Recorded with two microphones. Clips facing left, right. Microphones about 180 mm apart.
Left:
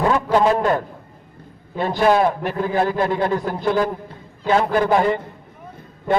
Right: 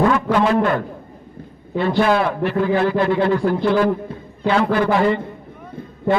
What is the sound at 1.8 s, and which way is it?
A man's voice, 45° left (ahead or behind).